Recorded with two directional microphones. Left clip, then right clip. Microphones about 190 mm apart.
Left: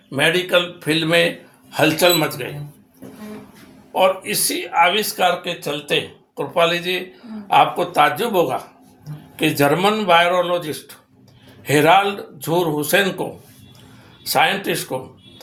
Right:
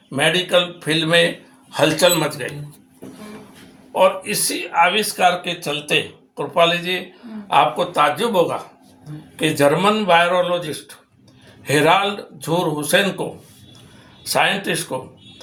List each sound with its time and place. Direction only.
0.1 s a man's voice: 10° left (ahead or behind)
3.9 s speech: 20° left (ahead or behind)
7.5 s a man's voice: 25° left (ahead or behind)
11.7 s a man's voice: 20° left (ahead or behind)
14.3 s speech: 15° left (ahead or behind)